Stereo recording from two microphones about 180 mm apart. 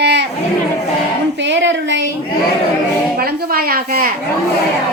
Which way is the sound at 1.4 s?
80° right.